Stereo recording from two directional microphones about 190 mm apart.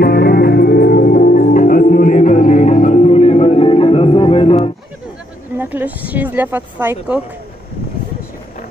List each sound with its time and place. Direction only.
0.0 s music: 55° left (ahead or behind); by 4.6 s 30° left (ahead or behind)
5.6 s speech: 10° right (ahead or behind)